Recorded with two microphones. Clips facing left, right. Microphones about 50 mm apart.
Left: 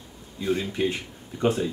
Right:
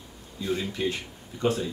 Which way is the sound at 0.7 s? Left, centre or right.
Centre.